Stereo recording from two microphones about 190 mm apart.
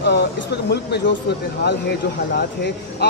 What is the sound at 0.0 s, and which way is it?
Speech, 65° left (ahead or behind).